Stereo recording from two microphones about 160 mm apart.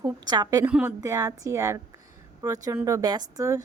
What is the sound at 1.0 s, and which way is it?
Speech, 20° right (ahead or behind).